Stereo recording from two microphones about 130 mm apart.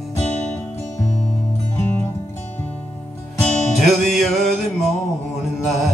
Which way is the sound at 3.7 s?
Centre (ahead or behind).